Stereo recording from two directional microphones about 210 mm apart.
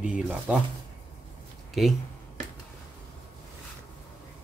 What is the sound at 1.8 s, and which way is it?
Speech, centre (ahead or behind).